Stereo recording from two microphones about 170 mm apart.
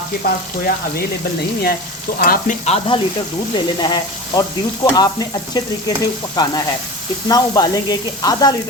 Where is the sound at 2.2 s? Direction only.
60° left (ahead or behind).